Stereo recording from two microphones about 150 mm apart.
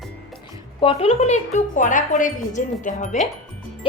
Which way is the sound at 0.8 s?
40° left (ahead or behind).